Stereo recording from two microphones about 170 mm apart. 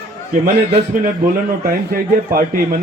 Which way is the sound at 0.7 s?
55° right (ahead or behind).